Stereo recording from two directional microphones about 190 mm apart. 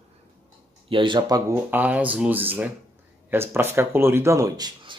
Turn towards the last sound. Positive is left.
turn(degrees=-20)  # may be behind; listen again after turning